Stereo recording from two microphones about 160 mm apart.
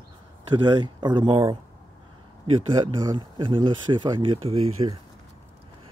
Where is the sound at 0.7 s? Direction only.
25° right (ahead or behind).